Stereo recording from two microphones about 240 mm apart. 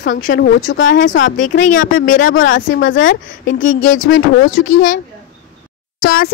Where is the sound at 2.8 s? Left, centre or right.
Left.